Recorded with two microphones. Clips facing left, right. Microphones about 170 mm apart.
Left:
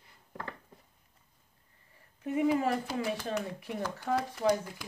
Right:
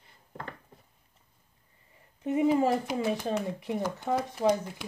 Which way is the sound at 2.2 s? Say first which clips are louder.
Right 4 dB; 25° right (ahead or behind).